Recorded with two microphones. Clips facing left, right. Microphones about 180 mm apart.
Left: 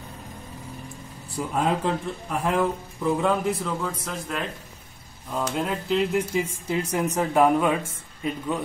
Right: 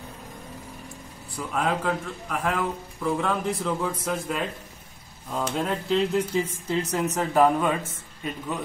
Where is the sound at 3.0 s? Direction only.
15° left (ahead or behind).